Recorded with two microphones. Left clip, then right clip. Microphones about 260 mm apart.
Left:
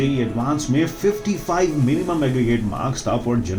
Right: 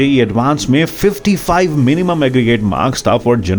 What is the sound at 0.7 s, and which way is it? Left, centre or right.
Speech, right.